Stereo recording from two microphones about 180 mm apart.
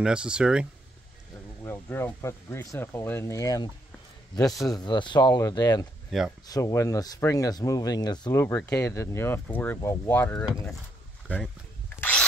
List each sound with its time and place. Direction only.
0.0 s speech: 5° right (ahead or behind)
1.6 s speech: 15° left (ahead or behind)
12.0 s a sound: 5° left (ahead or behind)